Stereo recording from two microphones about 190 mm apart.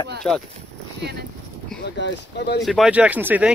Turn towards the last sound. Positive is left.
turn(degrees=-10)  # may be behind; listen again after turning